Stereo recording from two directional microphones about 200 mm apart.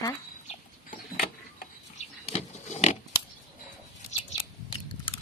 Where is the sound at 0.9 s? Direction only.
40° left (ahead or behind).